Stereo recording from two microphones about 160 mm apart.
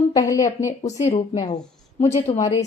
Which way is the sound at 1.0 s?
45° left (ahead or behind).